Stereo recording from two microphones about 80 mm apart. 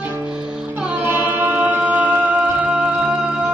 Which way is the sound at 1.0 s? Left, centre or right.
Right.